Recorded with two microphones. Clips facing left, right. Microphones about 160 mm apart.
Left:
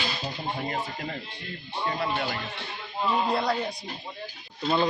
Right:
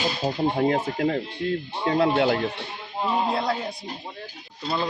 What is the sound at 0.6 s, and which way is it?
Speech, 90° right.